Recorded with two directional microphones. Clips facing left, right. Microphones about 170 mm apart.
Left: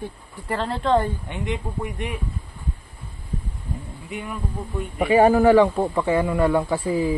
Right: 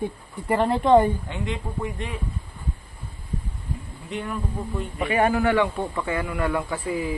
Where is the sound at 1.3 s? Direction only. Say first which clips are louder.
Left 2 dB; 15° left (ahead or behind).